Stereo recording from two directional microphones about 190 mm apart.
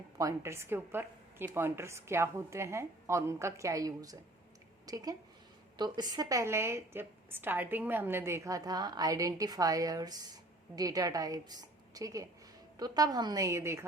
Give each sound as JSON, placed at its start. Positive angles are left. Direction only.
{"t": 0.2, "sound": "a woman's voice", "side_deg": -15}